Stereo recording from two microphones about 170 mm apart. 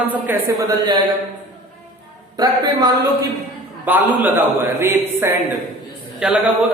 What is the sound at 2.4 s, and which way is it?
Speech, 25° right (ahead or behind).